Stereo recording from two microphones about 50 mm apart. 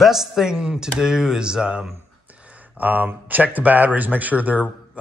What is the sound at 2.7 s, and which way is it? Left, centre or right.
Speech, right.